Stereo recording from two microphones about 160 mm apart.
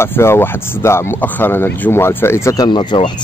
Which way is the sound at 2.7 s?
30° left (ahead or behind).